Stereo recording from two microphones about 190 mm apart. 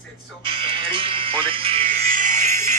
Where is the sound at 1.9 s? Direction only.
50° right (ahead or behind).